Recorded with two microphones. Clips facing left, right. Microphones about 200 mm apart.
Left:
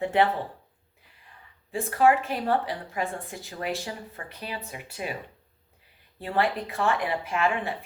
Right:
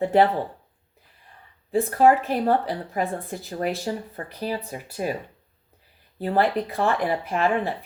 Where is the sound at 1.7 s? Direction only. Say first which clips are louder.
Right 4 dB; 35° right (ahead or behind).